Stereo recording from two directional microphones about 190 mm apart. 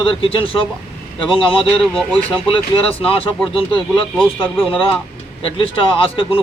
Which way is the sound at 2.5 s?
30° left (ahead or behind).